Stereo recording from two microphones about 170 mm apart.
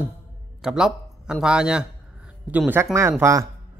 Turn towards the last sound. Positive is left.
turn(degrees=-15)  # may be behind; listen again after turning